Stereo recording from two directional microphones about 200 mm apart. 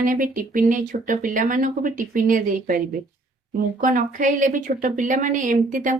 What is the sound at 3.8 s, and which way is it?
A woman's voice, 40° right (ahead or behind).